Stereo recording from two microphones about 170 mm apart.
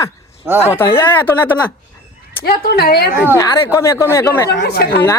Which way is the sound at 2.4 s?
65° left (ahead or behind).